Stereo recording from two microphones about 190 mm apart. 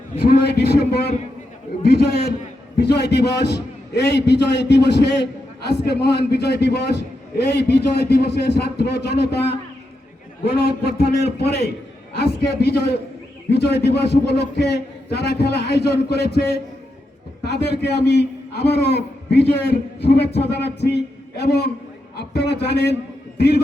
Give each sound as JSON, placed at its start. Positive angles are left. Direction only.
{"t": 0.4, "sound": "a man's voice", "side_deg": 60}
{"t": 10.5, "sound": "a man's voice", "side_deg": 55}